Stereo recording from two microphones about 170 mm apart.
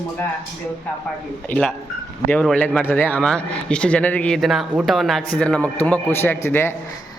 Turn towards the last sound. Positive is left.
turn(degrees=15)  # may be behind; listen again after turning